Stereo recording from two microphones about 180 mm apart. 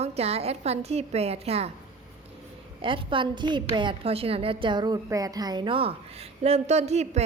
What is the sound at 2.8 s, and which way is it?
A woman's voice, 30° right (ahead or behind).